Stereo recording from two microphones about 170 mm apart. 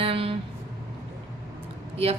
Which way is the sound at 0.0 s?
30° right (ahead or behind).